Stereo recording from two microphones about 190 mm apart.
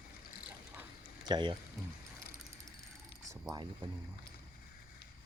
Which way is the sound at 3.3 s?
15° right (ahead or behind).